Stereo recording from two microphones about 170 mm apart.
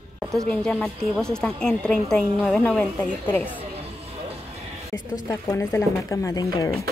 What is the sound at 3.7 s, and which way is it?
Music, 35° right (ahead or behind).